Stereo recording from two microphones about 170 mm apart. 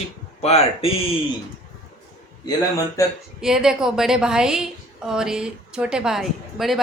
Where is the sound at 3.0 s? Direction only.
20° left (ahead or behind).